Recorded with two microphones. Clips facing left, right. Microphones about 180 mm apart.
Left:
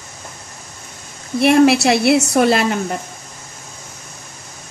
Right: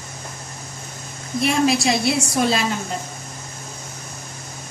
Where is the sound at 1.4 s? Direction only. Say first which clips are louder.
Left 7 dB; 65° left (ahead or behind).